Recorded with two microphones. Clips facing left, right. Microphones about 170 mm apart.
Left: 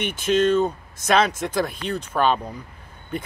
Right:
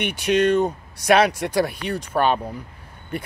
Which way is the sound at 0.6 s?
10° right (ahead or behind).